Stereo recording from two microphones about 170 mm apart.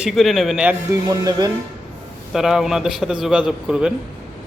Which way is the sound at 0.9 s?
20° right (ahead or behind).